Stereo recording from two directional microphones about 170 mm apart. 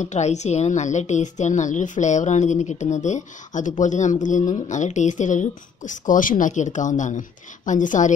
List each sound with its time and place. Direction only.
0.0 s a woman's voice: 45° left (ahead or behind)